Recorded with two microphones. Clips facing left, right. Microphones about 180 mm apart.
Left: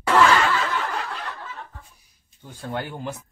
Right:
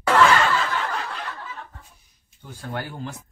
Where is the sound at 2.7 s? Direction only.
20° left (ahead or behind).